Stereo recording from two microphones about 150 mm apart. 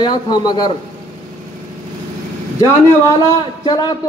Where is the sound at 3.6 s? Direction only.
30° left (ahead or behind).